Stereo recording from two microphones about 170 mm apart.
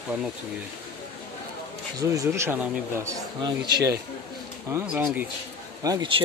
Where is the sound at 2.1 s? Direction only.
20° right (ahead or behind).